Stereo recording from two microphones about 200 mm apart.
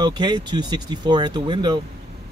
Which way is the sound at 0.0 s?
20° right (ahead or behind).